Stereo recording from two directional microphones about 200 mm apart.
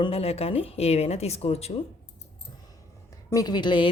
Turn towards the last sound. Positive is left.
turn(degrees=25)  # may be behind; listen again after turning